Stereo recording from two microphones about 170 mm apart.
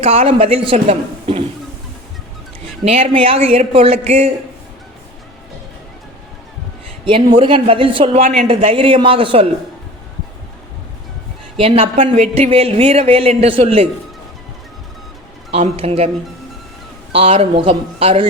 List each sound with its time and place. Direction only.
0.0 s speech: 35° right (ahead or behind)
2.8 s speech: 35° right (ahead or behind)
7.3 s speech: 30° right (ahead or behind)
11.5 s speech: 35° right (ahead or behind)
15.5 s speech: 40° right (ahead or behind)
17.2 s speech: 35° right (ahead or behind)